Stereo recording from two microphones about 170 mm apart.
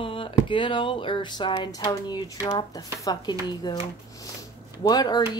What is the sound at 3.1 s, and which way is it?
Speech, 25° left (ahead or behind).